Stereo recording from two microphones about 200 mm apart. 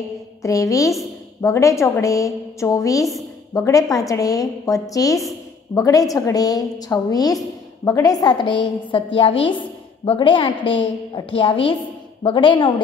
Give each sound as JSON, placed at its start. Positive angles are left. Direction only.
{"t": 0.4, "sound": "a woman's voice", "side_deg": 15}